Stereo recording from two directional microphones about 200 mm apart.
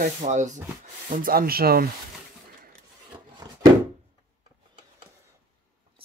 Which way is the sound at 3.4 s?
20° right (ahead or behind).